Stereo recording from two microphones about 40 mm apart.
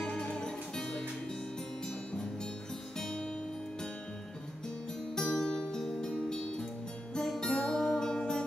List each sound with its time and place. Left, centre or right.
0.0 s music: left
3.0 s music: centre
5.1 s music: centre